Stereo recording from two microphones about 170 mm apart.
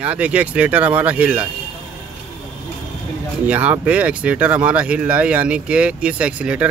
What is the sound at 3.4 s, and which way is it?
Speech, 10° right (ahead or behind).